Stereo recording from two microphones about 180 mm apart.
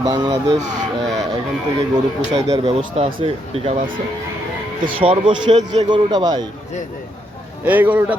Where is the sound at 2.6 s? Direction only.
30° right (ahead or behind).